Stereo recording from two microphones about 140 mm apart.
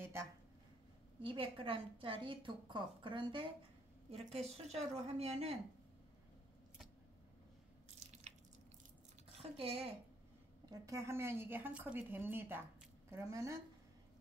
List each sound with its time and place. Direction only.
0.0 s a sound: 20° right (ahead or behind)
1.2 s a woman's voice: 40° right (ahead or behind)
8.3 s drip: 55° right (ahead or behind)
9.4 s speech: 45° right (ahead or behind)
10.6 s a woman's voice: 25° right (ahead or behind)